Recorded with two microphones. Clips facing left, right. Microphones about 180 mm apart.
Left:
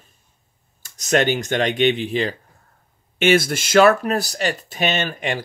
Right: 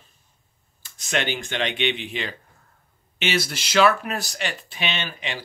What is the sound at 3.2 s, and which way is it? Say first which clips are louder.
Speech: left 9 dB; 50° left (ahead or behind).